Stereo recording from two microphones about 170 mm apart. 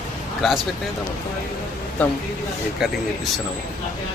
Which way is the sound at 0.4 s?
Centre (ahead or behind).